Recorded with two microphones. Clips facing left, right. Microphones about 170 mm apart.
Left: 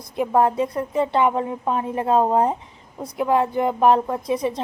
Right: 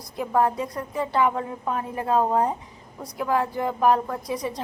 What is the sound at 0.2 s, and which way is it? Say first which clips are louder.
Speech: left 4 dB; 25° left (ahead or behind).